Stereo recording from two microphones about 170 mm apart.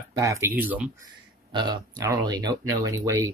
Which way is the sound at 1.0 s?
25° right (ahead or behind).